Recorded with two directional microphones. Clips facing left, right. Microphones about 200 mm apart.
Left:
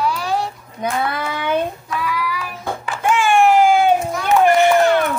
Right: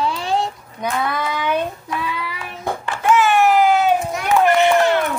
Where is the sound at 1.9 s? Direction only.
25° right (ahead or behind).